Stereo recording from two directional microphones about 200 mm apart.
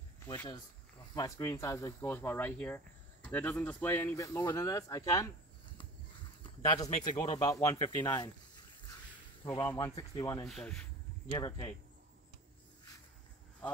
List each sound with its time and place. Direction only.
1.1 s speech: 15° left (ahead or behind)
6.6 s speech: 20° left (ahead or behind)
9.4 s speech: 15° left (ahead or behind)
10.4 s speech: centre (ahead or behind)
11.3 s speech: 20° left (ahead or behind)